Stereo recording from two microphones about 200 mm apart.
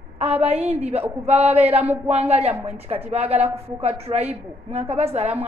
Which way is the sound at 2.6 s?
30° right (ahead or behind).